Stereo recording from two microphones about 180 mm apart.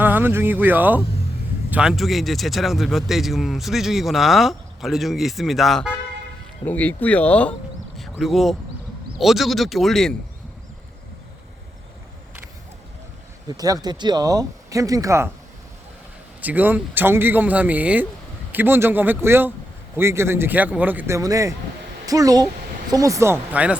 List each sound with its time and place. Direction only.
0.0 s speech: 10° right (ahead or behind)
13.5 s speech: 20° right (ahead or behind)
16.4 s a man's voice: 10° right (ahead or behind)